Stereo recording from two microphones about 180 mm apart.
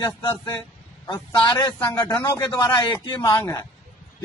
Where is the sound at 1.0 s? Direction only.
25° left (ahead or behind).